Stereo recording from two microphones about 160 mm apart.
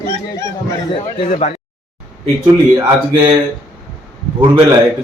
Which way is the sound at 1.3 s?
45° left (ahead or behind).